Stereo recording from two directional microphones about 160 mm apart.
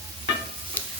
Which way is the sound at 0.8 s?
10° left (ahead or behind).